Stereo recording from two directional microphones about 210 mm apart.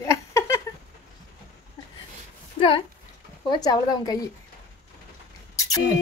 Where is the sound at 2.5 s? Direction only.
25° left (ahead or behind).